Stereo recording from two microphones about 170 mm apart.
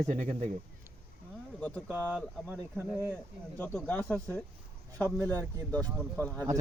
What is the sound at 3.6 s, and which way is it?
Speech, 10° left (ahead or behind).